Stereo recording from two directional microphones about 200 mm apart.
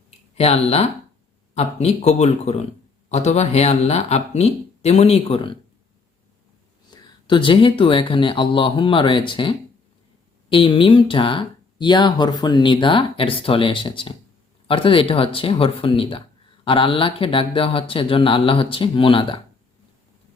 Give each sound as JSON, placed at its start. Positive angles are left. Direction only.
{"t": 0.3, "sound": "speech", "side_deg": 30}
{"t": 6.9, "sound": "speech", "side_deg": 25}